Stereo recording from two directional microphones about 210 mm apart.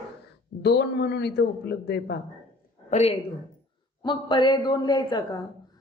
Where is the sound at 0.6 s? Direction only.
55° left (ahead or behind).